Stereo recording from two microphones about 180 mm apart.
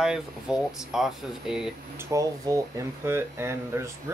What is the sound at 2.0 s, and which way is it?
Speech, 20° right (ahead or behind).